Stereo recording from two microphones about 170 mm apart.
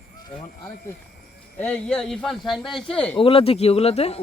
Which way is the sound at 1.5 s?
10° left (ahead or behind).